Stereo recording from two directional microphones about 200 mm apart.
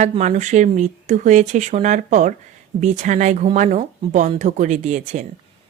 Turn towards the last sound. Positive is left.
turn(degrees=-40)  # may be behind; listen again after turning